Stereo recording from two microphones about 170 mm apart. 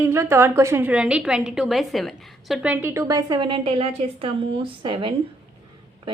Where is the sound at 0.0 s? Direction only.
15° right (ahead or behind).